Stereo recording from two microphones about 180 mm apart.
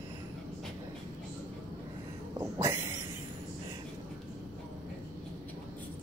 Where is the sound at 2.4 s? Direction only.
15° right (ahead or behind).